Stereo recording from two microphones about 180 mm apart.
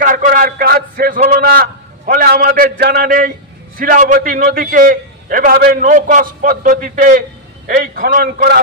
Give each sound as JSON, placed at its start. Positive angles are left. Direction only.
{"t": 0.0, "sound": "a man's voice", "side_deg": -50}